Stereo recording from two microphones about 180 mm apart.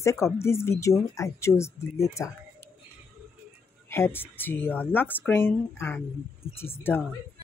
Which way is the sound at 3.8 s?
15° left (ahead or behind).